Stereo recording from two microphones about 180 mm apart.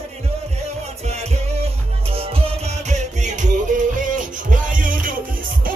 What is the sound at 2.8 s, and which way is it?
Music, 40° right (ahead or behind).